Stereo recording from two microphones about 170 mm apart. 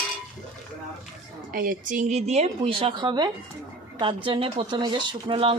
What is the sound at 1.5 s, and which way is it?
A woman's voice, 55° right (ahead or behind).